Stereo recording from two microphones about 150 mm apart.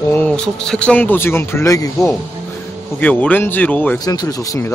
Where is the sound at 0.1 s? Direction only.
10° left (ahead or behind).